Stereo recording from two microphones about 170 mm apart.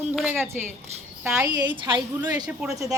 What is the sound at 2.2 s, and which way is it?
Speech, 25° right (ahead or behind).